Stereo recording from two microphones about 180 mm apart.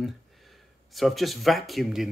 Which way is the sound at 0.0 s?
Centre (ahead or behind).